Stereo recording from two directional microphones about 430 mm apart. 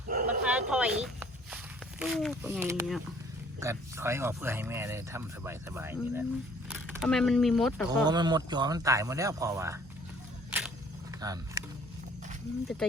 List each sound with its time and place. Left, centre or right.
0.1 s bow-wow: centre
0.4 s a sound: centre
2.0 s speech: centre
8.0 s speech: centre
11.2 s speech: centre